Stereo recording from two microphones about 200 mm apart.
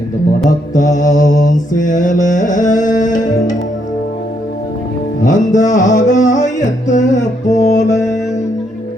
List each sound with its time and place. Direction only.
0.7 s mantra: 40° left (ahead or behind)
5.2 s mantra: 40° left (ahead or behind)